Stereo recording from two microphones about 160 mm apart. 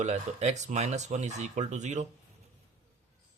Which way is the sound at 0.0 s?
45° right (ahead or behind).